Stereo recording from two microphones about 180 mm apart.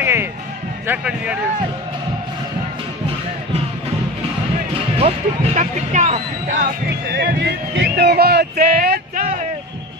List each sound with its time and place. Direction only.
0.0 s music: 15° right (ahead or behind)
0.8 s a man's voice: 5° right (ahead or behind)
4.9 s speech: 35° right (ahead or behind)
6.6 s speech: 65° right (ahead or behind)